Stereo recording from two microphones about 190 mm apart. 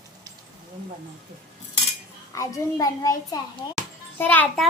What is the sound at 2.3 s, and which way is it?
A child's voice, 15° left (ahead or behind).